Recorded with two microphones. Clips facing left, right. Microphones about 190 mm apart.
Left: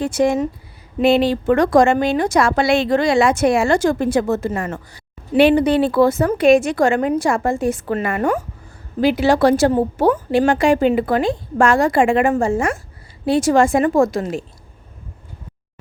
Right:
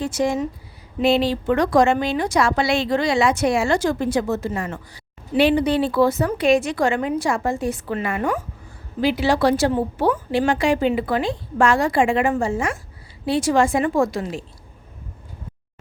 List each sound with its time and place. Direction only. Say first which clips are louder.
0.0 s a woman's voice: left 4 dB; 55° left (ahead or behind)